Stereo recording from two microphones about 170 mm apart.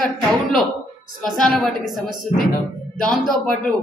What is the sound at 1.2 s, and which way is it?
A woman's voice, 5° left (ahead or behind).